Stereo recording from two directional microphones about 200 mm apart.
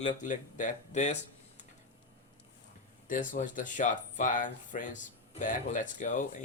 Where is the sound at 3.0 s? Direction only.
40° left (ahead or behind).